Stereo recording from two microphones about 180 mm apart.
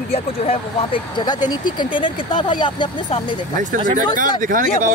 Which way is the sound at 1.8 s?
25° left (ahead or behind).